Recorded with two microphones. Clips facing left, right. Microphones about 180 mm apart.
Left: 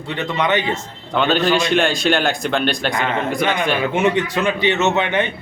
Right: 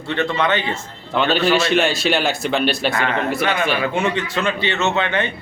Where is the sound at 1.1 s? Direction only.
5° right (ahead or behind).